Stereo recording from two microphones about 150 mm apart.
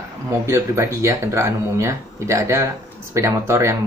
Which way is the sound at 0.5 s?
20° right (ahead or behind).